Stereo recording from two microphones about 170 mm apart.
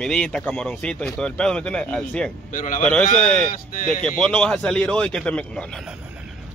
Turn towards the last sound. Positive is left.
turn(degrees=5)  # may be behind; listen again after turning